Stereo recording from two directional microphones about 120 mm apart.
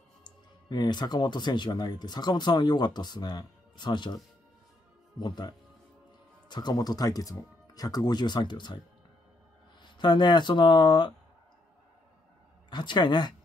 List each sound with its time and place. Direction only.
0.2 s speech: 35° left (ahead or behind)
5.2 s speech: 40° left (ahead or behind)
6.5 s speech: 35° left (ahead or behind)
9.8 s speech: 40° left (ahead or behind)
12.6 s speech: 40° left (ahead or behind)